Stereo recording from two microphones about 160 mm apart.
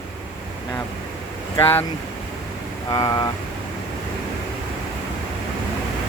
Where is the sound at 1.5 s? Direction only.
15° left (ahead or behind).